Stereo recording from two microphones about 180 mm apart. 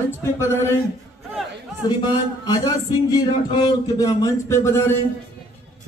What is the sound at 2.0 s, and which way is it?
Speech, 20° left (ahead or behind).